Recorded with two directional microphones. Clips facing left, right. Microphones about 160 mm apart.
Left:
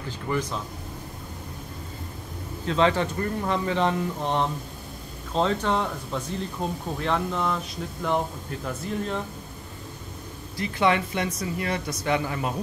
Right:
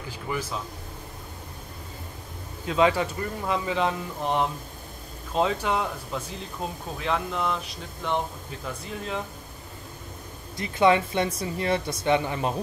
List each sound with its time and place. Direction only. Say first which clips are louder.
0.3 s speech: left 3 dB; 5° right (ahead or behind)
2.6 s speech: even; 10° right (ahead or behind)
10.6 s speech: right 2 dB; 25° right (ahead or behind)